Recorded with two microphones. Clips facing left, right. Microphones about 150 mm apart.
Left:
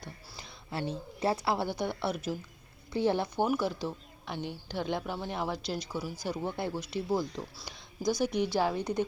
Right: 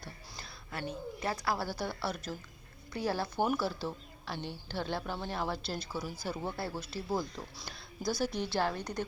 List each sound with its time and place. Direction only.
0.0 s a sound: 20° left (ahead or behind)
0.7 s a woman's voice: 30° left (ahead or behind)
2.0 s speech: 5° left (ahead or behind)
2.9 s a woman's voice: 20° left (ahead or behind)
8.8 s a woman's voice: 25° left (ahead or behind)